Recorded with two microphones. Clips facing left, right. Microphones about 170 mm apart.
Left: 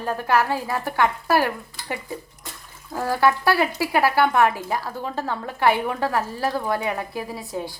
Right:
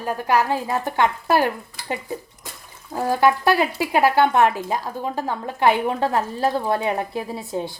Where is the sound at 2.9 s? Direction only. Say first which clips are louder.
Right 2 dB; 20° right (ahead or behind).